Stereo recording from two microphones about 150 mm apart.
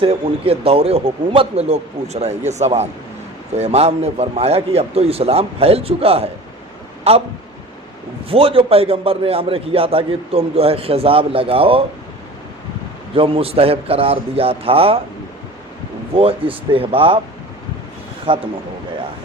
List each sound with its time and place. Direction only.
0.0 s a man's voice: 40° right (ahead or behind)
8.3 s a man's voice: 40° right (ahead or behind)
13.1 s a man's voice: 40° right (ahead or behind)
16.1 s a man's voice: 40° right (ahead or behind)
18.3 s a man's voice: 35° right (ahead or behind)